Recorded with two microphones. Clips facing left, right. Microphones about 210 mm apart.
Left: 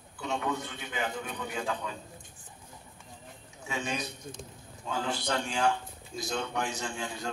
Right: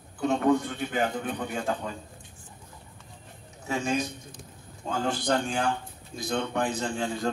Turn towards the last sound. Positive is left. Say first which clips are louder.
# right 7 dB
turn(degrees=-55)  # may be behind; listen again after turning